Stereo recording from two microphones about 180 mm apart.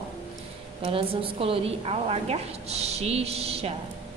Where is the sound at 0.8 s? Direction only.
30° right (ahead or behind).